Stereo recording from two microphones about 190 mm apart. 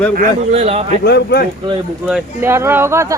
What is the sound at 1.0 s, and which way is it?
Speech, 60° left (ahead or behind).